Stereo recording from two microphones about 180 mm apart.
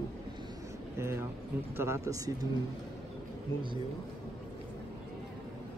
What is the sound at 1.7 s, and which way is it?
Speech, 15° right (ahead or behind).